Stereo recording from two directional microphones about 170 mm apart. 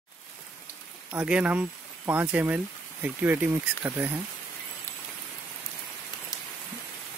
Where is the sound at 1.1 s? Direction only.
10° right (ahead or behind).